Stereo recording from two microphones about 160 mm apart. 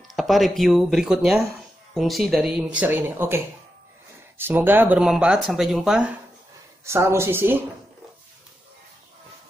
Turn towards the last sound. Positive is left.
turn(degrees=-15)  # may be behind; listen again after turning